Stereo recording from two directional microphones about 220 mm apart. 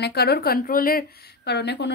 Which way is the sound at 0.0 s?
50° left (ahead or behind).